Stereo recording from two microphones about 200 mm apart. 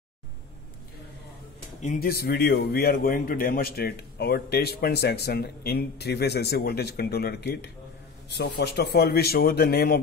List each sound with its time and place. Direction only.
1.8 s a man's voice: 40° left (ahead or behind)